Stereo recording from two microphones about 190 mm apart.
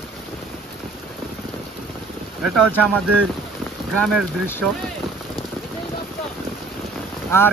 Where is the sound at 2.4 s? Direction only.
Centre (ahead or behind).